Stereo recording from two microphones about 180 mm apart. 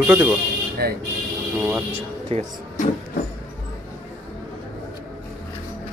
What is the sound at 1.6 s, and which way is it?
Speech, 10° right (ahead or behind).